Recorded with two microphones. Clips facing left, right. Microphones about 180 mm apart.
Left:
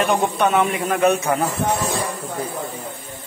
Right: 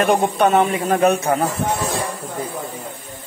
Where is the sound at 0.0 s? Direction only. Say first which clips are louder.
Right 3 dB; 45° right (ahead or behind).